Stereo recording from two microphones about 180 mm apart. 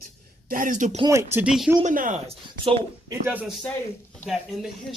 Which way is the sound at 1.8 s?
45° right (ahead or behind).